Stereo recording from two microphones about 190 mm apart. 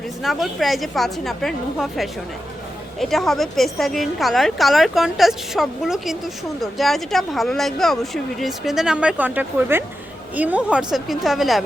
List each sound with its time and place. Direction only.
0.2 s a woman's voice: centre (ahead or behind)